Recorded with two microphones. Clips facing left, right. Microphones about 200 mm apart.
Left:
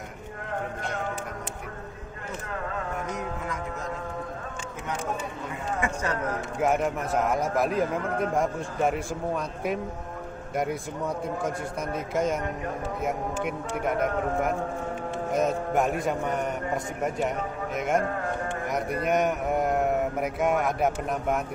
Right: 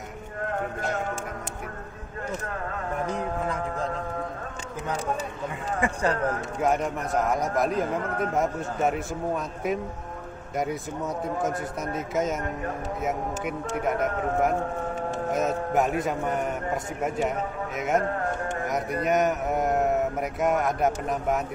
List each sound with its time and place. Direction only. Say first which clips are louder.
3.1 s music: right 4 dB; 30° right (ahead or behind)
5.8 s a sound: right 4 dB; 30° right (ahead or behind)
6.6 s a man's voice: left 1 dB; centre (ahead or behind)
10.5 s a man's voice: even; centre (ahead or behind)
17.7 s a man's voice: right 1 dB; centre (ahead or behind)